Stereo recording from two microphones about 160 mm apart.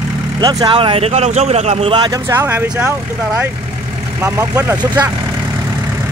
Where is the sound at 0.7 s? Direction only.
35° right (ahead or behind).